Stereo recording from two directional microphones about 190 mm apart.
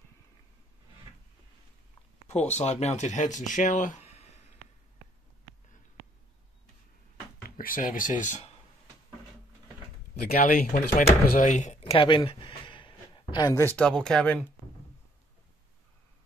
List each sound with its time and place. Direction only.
2.2 s speech: 35° left (ahead or behind)
7.4 s speech: 50° left (ahead or behind)
10.3 s speech: 50° left (ahead or behind); by 13.7 s 20° left (ahead or behind)
13.7 s speech: 5° left (ahead or behind)